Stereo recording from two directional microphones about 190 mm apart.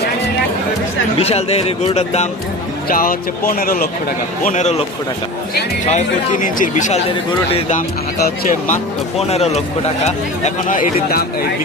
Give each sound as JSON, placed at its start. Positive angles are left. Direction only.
{"t": 1.2, "sound": "speech", "side_deg": 35}
{"t": 2.9, "sound": "speech", "side_deg": 50}
{"t": 4.4, "sound": "speech", "side_deg": 40}
{"t": 5.9, "sound": "speech", "side_deg": 45}